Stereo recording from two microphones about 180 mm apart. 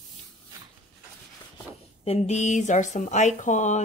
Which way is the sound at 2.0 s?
35° left (ahead or behind).